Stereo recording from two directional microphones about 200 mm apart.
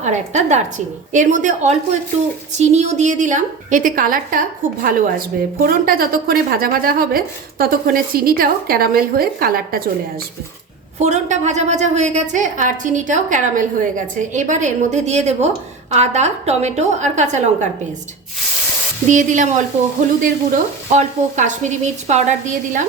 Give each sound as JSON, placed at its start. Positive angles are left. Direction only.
{"t": 0.0, "sound": "a woman's voice", "side_deg": -35}
{"t": 11.0, "sound": "a woman's voice", "side_deg": -35}
{"t": 19.0, "sound": "a woman's voice", "side_deg": -40}